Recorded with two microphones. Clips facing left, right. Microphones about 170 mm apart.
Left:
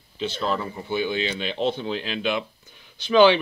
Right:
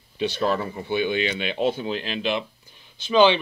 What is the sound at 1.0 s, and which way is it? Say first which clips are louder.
Speech: right 3 dB; 60° right (ahead or behind).